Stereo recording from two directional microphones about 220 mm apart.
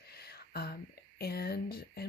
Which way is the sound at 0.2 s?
45° left (ahead or behind).